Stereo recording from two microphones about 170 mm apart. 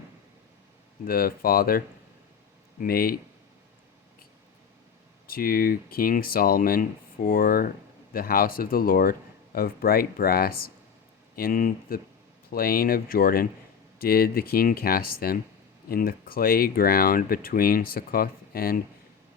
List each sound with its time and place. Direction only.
1.0 s speech: 60° left (ahead or behind)
2.8 s speech: 60° left (ahead or behind)
5.3 s speech: 60° left (ahead or behind)